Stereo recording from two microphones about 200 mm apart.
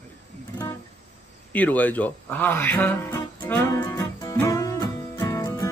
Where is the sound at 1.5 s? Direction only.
5° left (ahead or behind).